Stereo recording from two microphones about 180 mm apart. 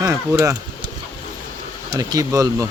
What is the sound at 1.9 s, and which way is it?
Speech, 20° right (ahead or behind).